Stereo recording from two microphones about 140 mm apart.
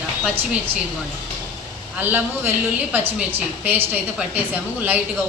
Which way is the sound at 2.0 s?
15° right (ahead or behind).